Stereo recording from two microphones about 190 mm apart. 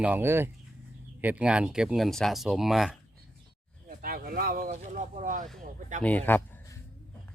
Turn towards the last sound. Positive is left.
turn(degrees=10)  # may be behind; listen again after turning